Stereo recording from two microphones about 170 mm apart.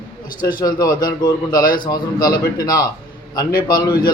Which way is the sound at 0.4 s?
20° left (ahead or behind).